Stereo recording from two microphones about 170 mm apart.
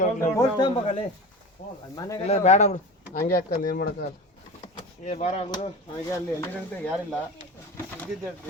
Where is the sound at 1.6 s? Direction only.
40° left (ahead or behind); by 4.0 s 65° left (ahead or behind).